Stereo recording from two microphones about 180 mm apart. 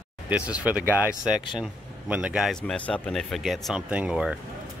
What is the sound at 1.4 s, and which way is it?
Speech, 25° left (ahead or behind).